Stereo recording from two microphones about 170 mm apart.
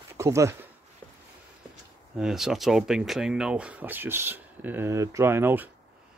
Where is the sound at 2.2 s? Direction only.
5° right (ahead or behind).